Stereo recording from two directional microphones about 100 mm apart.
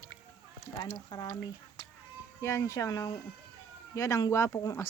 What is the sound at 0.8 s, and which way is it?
Speech, 35° left (ahead or behind).